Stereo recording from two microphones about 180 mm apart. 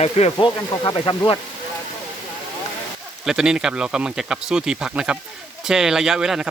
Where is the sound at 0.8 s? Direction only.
30° left (ahead or behind).